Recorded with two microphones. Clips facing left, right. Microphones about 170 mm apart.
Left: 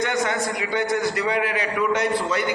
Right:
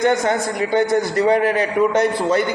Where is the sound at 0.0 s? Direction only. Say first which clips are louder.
Right 6 dB; 45° right (ahead or behind).